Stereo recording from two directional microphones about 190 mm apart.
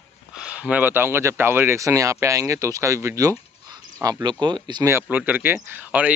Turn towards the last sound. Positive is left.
turn(degrees=-10)  # may be behind; listen again after turning